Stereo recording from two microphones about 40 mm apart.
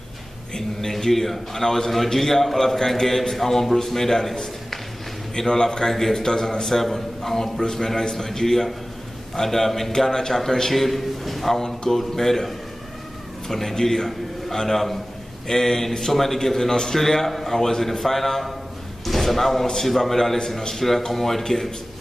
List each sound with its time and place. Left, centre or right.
0.6 s a man's voice: centre
11.5 s a man's voice: centre